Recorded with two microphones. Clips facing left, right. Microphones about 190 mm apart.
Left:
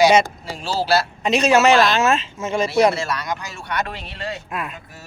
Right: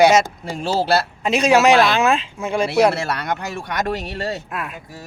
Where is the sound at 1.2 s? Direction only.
10° right (ahead or behind).